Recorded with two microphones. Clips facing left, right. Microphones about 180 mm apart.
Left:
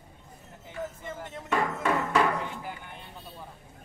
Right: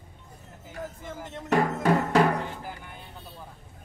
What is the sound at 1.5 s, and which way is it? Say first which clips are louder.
Music: right 4 dB; 40° right (ahead or behind).